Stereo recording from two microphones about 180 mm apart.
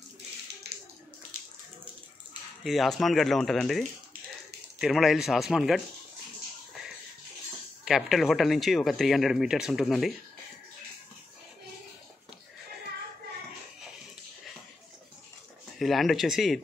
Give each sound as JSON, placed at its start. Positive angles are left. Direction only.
{"t": 0.7, "sound": "a sound", "side_deg": -65}
{"t": 2.6, "sound": "speech", "side_deg": 0}
{"t": 7.8, "sound": "speech", "side_deg": 0}
{"t": 15.8, "sound": "speech", "side_deg": 0}